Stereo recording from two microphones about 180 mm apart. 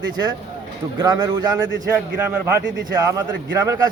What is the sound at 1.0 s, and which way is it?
Speech, 20° right (ahead or behind).